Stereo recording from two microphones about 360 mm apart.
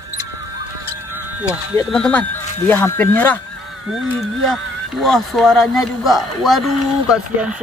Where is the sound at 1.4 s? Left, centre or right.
Centre.